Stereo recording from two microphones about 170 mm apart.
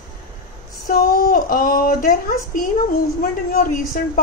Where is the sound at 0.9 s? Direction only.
60° left (ahead or behind).